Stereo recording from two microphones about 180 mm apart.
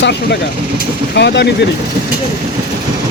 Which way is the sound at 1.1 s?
70° left (ahead or behind).